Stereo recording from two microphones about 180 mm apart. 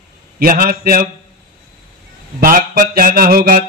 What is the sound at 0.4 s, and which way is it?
Speech, 55° right (ahead or behind).